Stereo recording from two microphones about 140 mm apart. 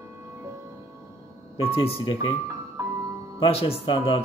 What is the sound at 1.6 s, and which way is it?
Speech, 40° left (ahead or behind).